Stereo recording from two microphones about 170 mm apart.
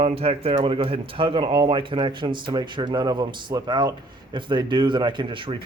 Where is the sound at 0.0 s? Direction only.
35° right (ahead or behind).